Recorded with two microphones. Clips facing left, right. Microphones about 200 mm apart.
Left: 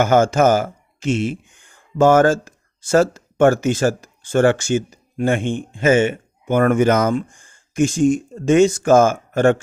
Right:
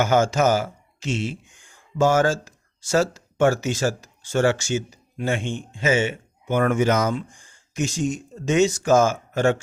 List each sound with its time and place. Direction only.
0.0 s speech: 50° left (ahead or behind)